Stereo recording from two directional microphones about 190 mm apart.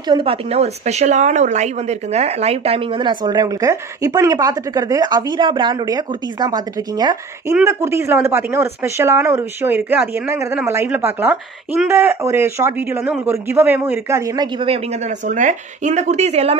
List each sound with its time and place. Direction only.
0.0 s speech: 25° right (ahead or behind)